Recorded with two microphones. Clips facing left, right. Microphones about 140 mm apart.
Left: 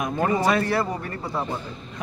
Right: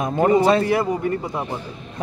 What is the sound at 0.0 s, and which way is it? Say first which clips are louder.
A man's voice: right 6 dB; 25° right (ahead or behind).